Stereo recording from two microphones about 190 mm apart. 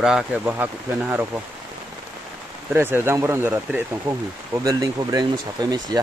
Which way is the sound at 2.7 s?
10° right (ahead or behind).